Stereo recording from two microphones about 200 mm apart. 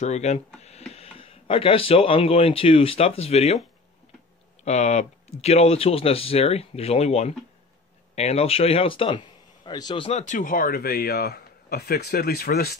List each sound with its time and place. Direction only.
0.0 s speech: 35° left (ahead or behind)
4.6 s speech: 35° left (ahead or behind); by 12.7 s 50° left (ahead or behind)